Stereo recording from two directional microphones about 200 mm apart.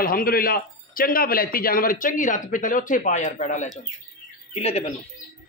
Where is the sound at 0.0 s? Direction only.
45° left (ahead or behind).